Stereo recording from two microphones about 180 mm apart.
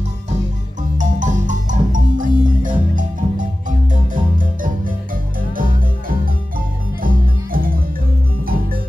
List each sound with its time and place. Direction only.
0.9 s music: 45° right (ahead or behind)